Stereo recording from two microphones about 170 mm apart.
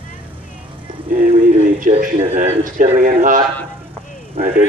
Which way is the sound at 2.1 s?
40° right (ahead or behind).